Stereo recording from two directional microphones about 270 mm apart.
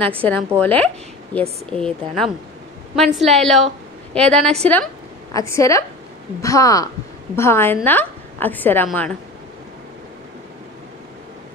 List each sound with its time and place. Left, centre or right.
0.6 s a woman's voice: centre